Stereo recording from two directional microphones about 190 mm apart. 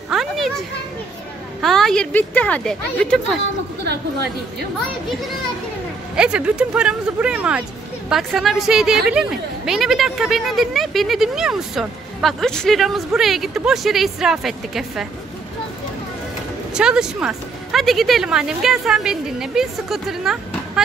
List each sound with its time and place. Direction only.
0.1 s a sound: centre (ahead or behind)
1.6 s a woman's voice: centre (ahead or behind)
3.8 s a woman's voice: 60° right (ahead or behind)
6.1 s a woman's voice: 5° right (ahead or behind)
16.7 s a woman's voice: 5° right (ahead or behind)